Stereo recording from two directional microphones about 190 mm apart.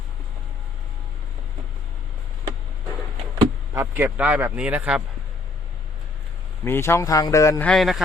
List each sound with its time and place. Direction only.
3.8 s a man's voice: 10° right (ahead or behind)
6.7 s speech: 15° left (ahead or behind)
7.7 s speech: centre (ahead or behind)